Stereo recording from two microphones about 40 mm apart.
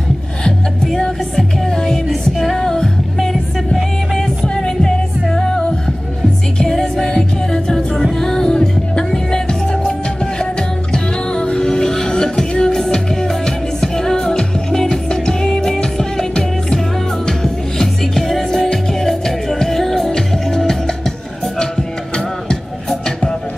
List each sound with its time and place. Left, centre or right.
0.9 s music: centre
4.6 s music: centre